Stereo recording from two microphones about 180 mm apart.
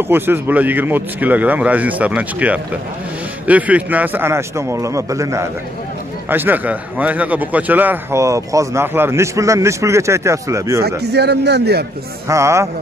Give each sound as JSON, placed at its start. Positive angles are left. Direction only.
{"t": 0.1, "sound": "a man's voice", "side_deg": -10}
{"t": 11.0, "sound": "a man's voice", "side_deg": -65}
{"t": 12.3, "sound": "a man's voice", "side_deg": -15}